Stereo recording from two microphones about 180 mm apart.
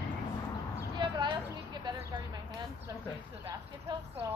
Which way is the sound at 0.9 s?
25° right (ahead or behind).